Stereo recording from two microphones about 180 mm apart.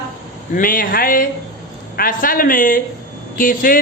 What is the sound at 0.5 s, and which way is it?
Speech, 50° left (ahead or behind).